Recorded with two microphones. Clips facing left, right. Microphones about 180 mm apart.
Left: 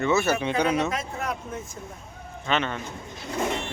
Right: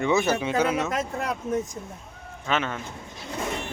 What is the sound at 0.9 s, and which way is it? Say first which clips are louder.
Speech: right 2 dB; 40° right (ahead or behind).